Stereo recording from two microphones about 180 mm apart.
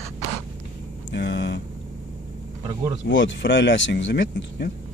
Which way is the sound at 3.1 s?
90° left.